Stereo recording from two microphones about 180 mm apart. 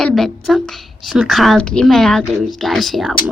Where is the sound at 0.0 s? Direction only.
Centre (ahead or behind).